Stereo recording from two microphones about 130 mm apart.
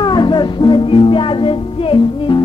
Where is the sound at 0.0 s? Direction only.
35° left (ahead or behind).